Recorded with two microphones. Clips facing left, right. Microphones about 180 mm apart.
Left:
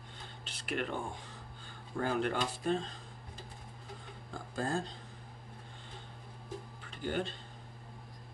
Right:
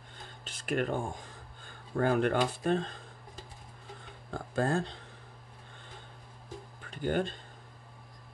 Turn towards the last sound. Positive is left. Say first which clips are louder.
# right 5 dB
turn(degrees=-50)  # may be behind; listen again after turning